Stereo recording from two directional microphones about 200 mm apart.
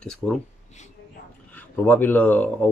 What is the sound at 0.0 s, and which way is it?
Speech, centre (ahead or behind).